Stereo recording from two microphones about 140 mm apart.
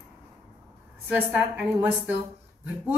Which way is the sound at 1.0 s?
10° right (ahead or behind).